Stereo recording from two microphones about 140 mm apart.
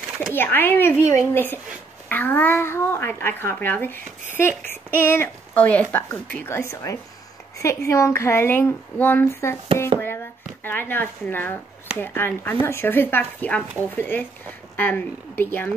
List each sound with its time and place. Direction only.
0.3 s a child's voice: 15° left (ahead or behind)
10.6 s a child's voice: 15° left (ahead or behind)